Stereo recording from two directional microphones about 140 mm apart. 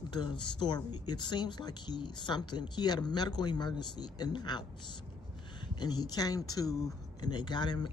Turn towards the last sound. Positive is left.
turn(degrees=30)  # may be behind; listen again after turning